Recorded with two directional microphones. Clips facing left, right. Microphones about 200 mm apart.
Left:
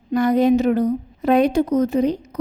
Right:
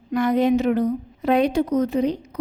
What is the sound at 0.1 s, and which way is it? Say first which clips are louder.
A woman's voice: left 3 dB; 40° left (ahead or behind).